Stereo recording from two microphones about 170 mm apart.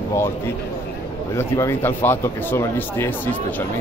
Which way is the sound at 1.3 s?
15° left (ahead or behind).